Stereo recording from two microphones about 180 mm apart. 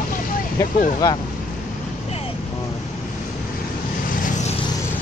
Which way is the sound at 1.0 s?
25° left (ahead or behind).